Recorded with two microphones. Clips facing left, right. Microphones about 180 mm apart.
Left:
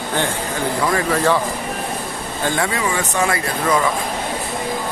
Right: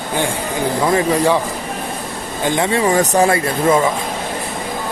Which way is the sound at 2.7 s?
40° right (ahead or behind).